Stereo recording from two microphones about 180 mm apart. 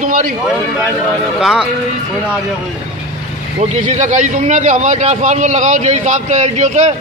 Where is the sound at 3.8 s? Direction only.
45° right (ahead or behind).